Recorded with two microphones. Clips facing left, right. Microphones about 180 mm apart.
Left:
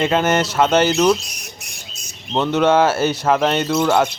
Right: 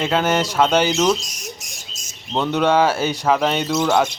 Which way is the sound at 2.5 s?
5° left (ahead or behind).